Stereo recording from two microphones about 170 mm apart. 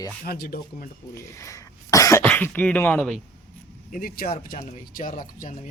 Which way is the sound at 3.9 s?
60° left (ahead or behind).